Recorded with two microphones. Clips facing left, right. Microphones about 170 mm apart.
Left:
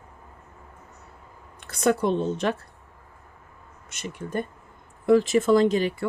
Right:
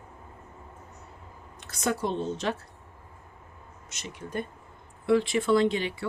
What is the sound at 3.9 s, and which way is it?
Speech, 55° left (ahead or behind).